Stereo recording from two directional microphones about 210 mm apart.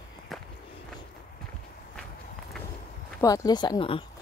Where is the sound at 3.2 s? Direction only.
20° left (ahead or behind).